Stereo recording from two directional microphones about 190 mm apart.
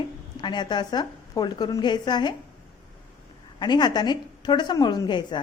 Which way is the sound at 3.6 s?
20° left (ahead or behind).